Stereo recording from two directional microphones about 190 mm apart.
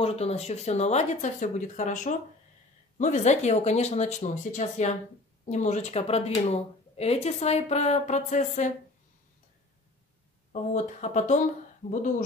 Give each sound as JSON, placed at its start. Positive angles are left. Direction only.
{"t": 0.0, "sound": "speech", "side_deg": 30}
{"t": 10.5, "sound": "speech", "side_deg": 35}